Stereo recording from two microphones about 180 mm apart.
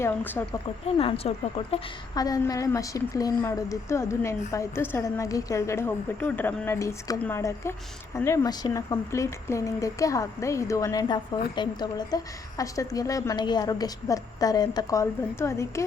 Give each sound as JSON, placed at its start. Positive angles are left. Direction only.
{"t": 0.0, "sound": "a woman's voice", "side_deg": 10}
{"t": 0.9, "sound": "a woman's voice", "side_deg": 35}
{"t": 2.1, "sound": "a woman's voice", "side_deg": 20}